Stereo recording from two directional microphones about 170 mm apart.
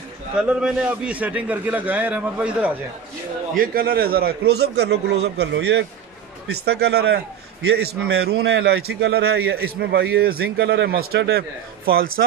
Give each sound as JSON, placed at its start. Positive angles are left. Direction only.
{"t": 0.4, "sound": "a man's voice", "side_deg": -5}
{"t": 3.5, "sound": "a man's voice", "side_deg": -60}